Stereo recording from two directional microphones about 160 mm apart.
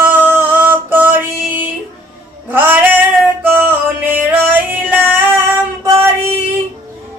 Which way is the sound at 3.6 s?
10° right (ahead or behind).